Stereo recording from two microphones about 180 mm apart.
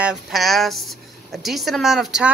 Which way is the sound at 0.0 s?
Centre (ahead or behind).